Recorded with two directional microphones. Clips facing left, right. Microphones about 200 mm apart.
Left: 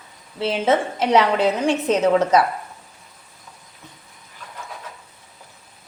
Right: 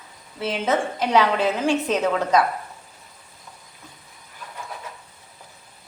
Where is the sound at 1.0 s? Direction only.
Centre (ahead or behind).